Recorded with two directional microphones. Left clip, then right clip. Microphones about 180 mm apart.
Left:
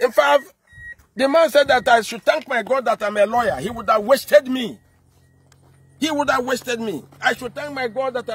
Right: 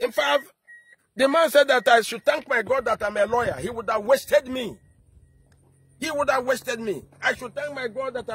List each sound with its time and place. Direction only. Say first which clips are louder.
0.2 s a man's voice: left 6 dB; 10° right (ahead or behind)
1.1 s speech: left 3 dB; 35° right (ahead or behind)
2.7 s speech: left 4 dB; 25° right (ahead or behind)
5.9 s a man's voice: left 4 dB; 30° right (ahead or behind)